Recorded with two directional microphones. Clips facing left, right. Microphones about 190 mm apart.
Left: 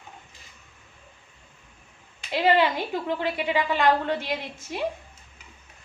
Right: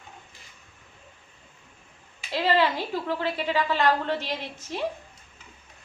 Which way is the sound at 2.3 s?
15° left (ahead or behind).